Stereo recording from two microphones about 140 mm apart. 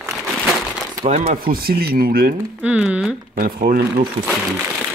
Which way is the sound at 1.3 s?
90° right.